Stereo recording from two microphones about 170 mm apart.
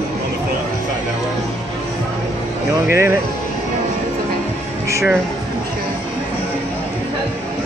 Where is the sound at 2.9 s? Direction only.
15° right (ahead or behind).